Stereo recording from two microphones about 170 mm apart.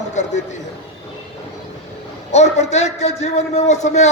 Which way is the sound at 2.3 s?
40° left (ahead or behind).